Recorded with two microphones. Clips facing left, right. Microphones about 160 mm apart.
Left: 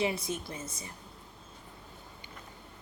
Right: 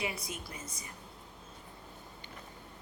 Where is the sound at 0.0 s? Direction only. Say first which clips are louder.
Left 7 dB; 25° left (ahead or behind).